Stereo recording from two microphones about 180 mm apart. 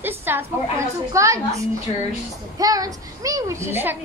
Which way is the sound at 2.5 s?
20° right (ahead or behind).